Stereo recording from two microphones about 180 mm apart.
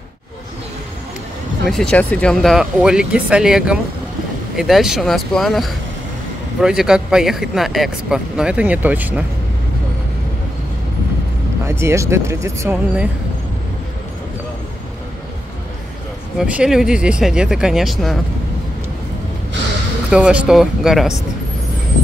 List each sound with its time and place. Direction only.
1.7 s speech: 5° left (ahead or behind)
11.6 s speech: 15° right (ahead or behind)
16.3 s speech: 5° right (ahead or behind)
20.1 s speech: 5° right (ahead or behind)